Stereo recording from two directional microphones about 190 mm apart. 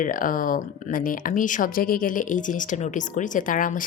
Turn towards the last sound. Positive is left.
turn(degrees=45)  # may be behind; listen again after turning